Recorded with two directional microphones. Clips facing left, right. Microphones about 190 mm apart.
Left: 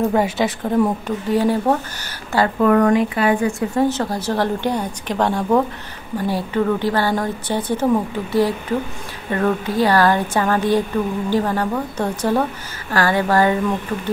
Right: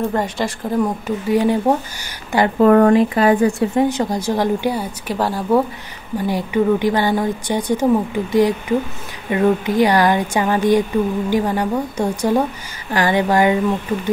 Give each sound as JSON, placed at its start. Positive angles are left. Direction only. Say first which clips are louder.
{"t": 0.1, "sound": "a woman's voice", "louder": "left 3 dB", "side_deg": 5}
{"t": 2.6, "sound": "speech", "louder": "right 4 dB", "side_deg": -30}
{"t": 3.7, "sound": "a woman's voice", "louder": "right 2 dB", "side_deg": -15}